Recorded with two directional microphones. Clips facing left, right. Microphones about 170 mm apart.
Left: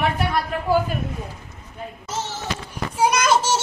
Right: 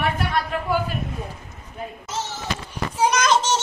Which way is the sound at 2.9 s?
10° left (ahead or behind).